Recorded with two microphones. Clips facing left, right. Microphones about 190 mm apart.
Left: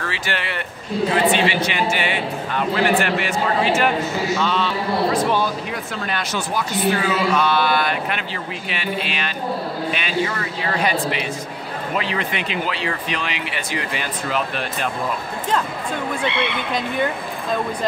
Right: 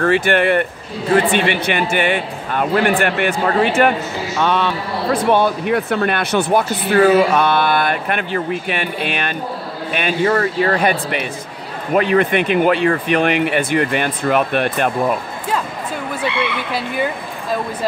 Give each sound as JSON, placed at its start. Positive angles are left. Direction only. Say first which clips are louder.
{"t": 0.0, "sound": "a man's voice", "louder": "right 12 dB", "side_deg": -55}
{"t": 16.7, "sound": "speech", "louder": "even", "side_deg": -5}